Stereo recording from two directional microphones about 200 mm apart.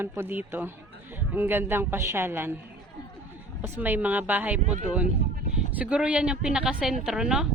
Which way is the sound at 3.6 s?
10° right (ahead or behind).